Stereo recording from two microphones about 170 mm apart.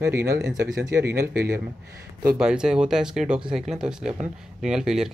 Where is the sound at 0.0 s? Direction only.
15° right (ahead or behind).